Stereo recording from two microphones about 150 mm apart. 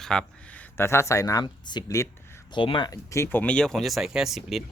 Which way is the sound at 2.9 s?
20° left (ahead or behind).